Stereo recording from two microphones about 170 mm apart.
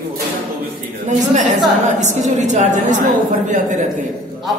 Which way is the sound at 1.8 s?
45° right (ahead or behind).